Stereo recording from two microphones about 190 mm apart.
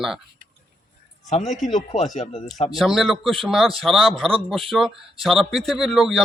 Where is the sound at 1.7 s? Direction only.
35° left (ahead or behind).